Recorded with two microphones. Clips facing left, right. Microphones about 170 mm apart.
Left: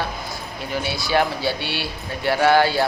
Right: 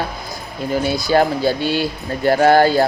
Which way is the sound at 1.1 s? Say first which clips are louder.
Right 5 dB; 45° right (ahead or behind).